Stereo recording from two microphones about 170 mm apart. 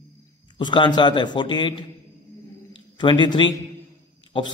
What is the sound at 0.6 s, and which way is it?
A man's voice, 25° left (ahead or behind).